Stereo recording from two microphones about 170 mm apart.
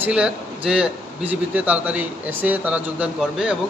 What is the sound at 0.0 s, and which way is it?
A man's voice, 5° right (ahead or behind).